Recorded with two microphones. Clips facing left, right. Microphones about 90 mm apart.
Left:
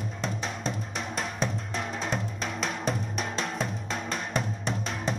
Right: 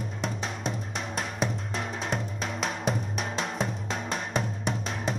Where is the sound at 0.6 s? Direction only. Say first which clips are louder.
Even; 10° right (ahead or behind).